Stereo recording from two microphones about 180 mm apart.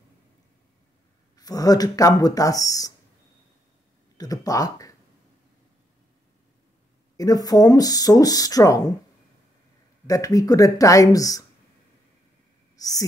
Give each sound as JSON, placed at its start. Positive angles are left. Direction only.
{"t": 1.3, "sound": "speech", "side_deg": 20}
{"t": 4.2, "sound": "speech", "side_deg": 20}
{"t": 7.2, "sound": "speech", "side_deg": 20}
{"t": 10.0, "sound": "speech", "side_deg": 20}
{"t": 12.7, "sound": "a sound", "side_deg": 20}